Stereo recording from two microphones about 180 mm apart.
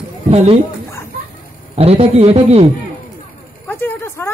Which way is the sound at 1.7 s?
35° right (ahead or behind).